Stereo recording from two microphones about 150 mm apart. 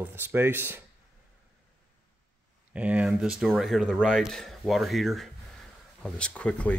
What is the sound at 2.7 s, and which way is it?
Speech, 10° right (ahead or behind).